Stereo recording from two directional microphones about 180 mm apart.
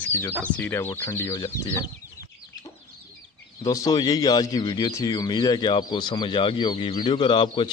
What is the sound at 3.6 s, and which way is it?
Speech, 20° left (ahead or behind).